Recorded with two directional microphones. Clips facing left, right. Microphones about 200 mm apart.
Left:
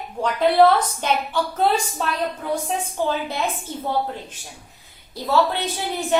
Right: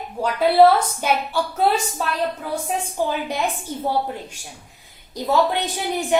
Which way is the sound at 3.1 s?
15° right (ahead or behind).